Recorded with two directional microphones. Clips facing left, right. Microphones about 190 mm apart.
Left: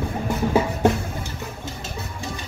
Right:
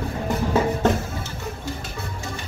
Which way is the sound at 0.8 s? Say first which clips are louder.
Left 3 dB; 10° left (ahead or behind).